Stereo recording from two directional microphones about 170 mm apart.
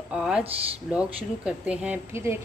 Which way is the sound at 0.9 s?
5° right (ahead or behind).